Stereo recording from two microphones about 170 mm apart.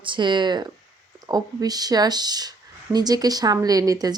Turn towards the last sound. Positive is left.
turn(degrees=-20)  # may be behind; listen again after turning